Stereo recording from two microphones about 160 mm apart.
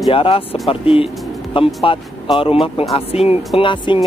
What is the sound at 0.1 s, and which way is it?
Speech, 35° left (ahead or behind).